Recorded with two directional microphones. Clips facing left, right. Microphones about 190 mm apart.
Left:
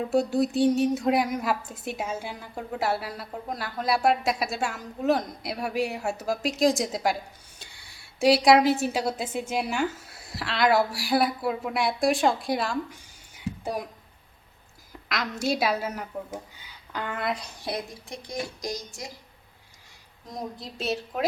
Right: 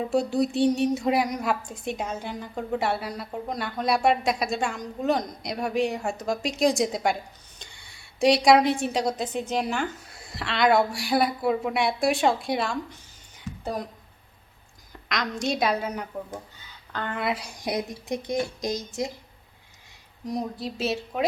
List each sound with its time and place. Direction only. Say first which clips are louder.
0.0 s a woman's voice: even; centre (ahead or behind)
15.1 s a woman's voice: even; 5° left (ahead or behind); by 19.1 s 20° right (ahead or behind)
20.2 s a woman's voice: right 6 dB; 5° right (ahead or behind)